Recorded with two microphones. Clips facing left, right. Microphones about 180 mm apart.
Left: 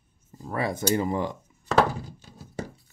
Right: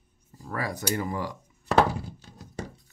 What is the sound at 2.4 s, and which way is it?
Music, 5° left (ahead or behind).